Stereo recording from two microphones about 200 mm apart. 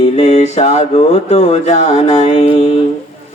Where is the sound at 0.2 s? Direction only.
35° left (ahead or behind).